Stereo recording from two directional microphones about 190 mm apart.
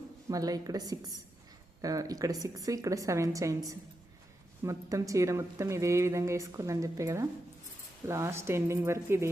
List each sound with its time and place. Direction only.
0.3 s a woman's voice: 20° right (ahead or behind)